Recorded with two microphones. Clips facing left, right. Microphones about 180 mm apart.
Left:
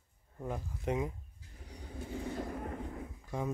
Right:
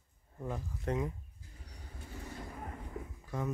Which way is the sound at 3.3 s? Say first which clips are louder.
Left 1 dB; 15° left (ahead or behind).